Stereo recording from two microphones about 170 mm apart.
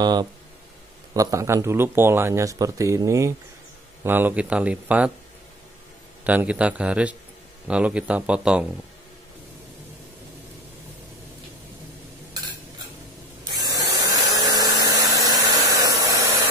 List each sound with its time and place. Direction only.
0.0 s a man's voice: 25° right (ahead or behind); by 5.1 s 10° right (ahead or behind)
6.2 s a man's voice: 10° right (ahead or behind)
13.6 s a sound: 20° right (ahead or behind)
14.9 s hair dryer: 20° right (ahead or behind)